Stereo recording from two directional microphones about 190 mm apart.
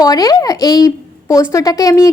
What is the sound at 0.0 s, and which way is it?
A woman's voice, 20° left (ahead or behind).